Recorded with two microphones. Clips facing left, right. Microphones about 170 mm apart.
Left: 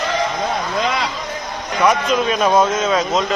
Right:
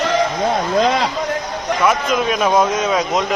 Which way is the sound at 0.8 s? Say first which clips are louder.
Right 6 dB; 35° right (ahead or behind).